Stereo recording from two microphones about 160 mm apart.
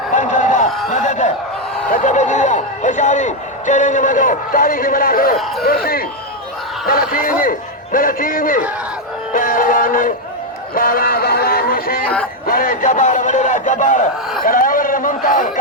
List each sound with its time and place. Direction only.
0.1 s a sound: 50° left (ahead or behind)
1.9 s a man's voice: 50° left (ahead or behind)
9.3 s music: 60° left (ahead or behind)
12.5 s a man's voice: 60° left (ahead or behind)